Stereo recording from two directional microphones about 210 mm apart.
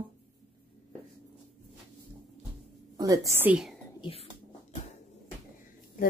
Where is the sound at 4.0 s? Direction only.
25° left (ahead or behind).